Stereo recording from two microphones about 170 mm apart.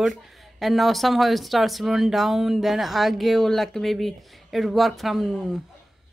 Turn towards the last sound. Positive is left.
turn(degrees=0)  # may be behind; listen again after turning